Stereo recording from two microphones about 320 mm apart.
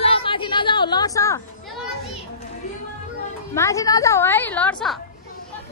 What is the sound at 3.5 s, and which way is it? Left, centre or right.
A woman's voice, centre.